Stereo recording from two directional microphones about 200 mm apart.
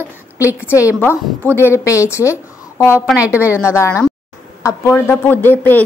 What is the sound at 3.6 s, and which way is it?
Speech, 15° left (ahead or behind).